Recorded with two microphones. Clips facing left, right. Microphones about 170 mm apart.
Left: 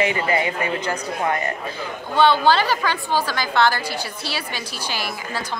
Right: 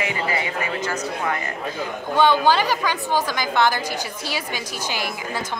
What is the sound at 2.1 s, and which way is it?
A woman's voice, 15° right (ahead or behind).